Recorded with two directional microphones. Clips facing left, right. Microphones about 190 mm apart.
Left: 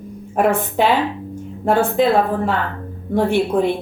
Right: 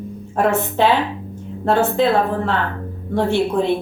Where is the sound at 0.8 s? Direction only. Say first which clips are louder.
Even; 10° left (ahead or behind).